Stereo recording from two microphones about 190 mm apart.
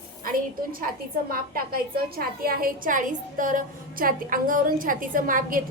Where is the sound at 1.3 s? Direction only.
50° right (ahead or behind).